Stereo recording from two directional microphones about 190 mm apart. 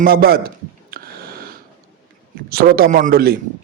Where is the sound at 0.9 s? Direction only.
55° right (ahead or behind).